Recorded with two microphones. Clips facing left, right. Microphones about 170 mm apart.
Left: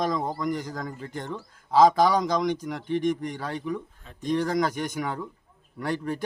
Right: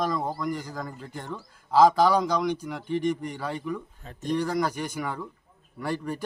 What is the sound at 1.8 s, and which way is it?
Speech, 15° left (ahead or behind).